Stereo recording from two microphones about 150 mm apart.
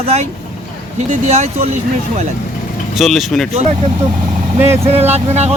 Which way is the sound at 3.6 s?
45° right (ahead or behind).